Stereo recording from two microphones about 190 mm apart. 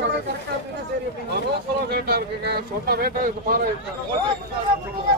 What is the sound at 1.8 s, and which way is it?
Speech, 55° right (ahead or behind).